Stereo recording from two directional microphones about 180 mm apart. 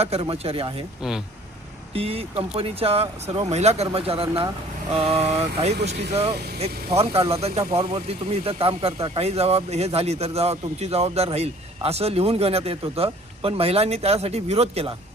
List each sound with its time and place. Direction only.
0.0 s speech: 35° right (ahead or behind)
1.9 s speech: 35° right (ahead or behind)